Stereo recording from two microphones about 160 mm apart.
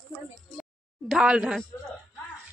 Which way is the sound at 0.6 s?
Centre (ahead or behind).